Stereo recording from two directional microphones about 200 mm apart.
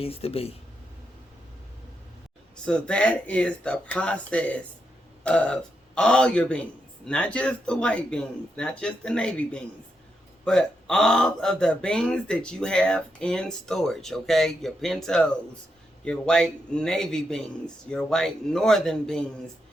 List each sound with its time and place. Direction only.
0.0 s speech: 30° left (ahead or behind)
2.6 s a man's voice: 5° left (ahead or behind)